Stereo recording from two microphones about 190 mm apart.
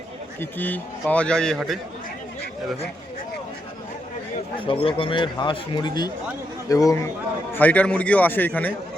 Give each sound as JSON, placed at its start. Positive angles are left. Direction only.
{"t": 0.3, "sound": "a man's voice", "side_deg": 10}
{"t": 4.6, "sound": "a man's voice", "side_deg": 30}